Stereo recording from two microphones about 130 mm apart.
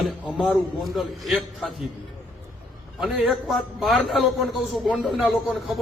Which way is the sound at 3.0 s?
5° right (ahead or behind).